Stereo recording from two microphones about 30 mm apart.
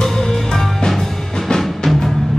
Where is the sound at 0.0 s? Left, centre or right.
Centre.